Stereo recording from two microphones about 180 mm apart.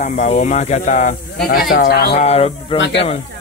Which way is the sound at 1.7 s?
55° left (ahead or behind).